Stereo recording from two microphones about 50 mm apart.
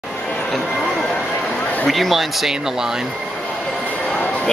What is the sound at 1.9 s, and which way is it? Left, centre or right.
Speech, centre.